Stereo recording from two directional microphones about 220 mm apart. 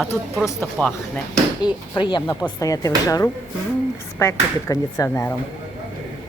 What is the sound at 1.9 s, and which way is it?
A woman's voice, 20° left (ahead or behind).